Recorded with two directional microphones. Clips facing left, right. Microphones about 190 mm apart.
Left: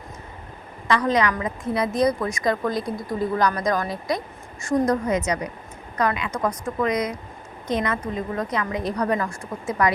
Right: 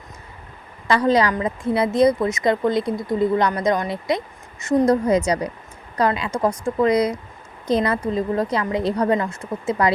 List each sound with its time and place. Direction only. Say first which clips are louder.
0.9 s a woman's voice: right 3 dB; 30° right (ahead or behind)